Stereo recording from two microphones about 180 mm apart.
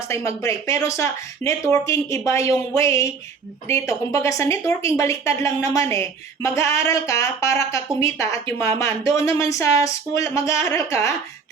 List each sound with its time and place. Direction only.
0.1 s a woman's voice: 15° left (ahead or behind)